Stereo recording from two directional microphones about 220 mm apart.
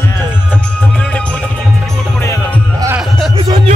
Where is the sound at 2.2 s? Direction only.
15° left (ahead or behind).